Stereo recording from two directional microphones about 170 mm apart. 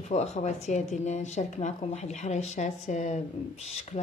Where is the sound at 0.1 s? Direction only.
40° left (ahead or behind).